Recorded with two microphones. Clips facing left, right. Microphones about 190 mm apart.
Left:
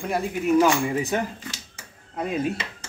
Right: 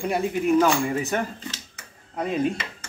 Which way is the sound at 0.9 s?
15° left (ahead or behind).